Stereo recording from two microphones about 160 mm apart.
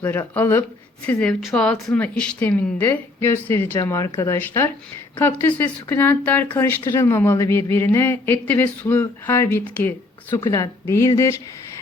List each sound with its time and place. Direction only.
0.0 s speech: 15° left (ahead or behind)